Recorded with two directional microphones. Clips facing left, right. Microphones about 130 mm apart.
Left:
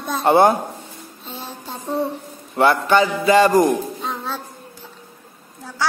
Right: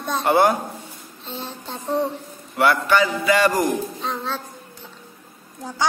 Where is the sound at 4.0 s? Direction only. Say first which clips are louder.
Even; 10° left (ahead or behind).